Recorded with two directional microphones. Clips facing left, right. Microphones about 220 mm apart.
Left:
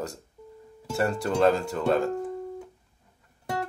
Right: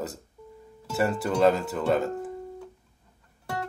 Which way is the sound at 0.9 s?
5° right (ahead or behind).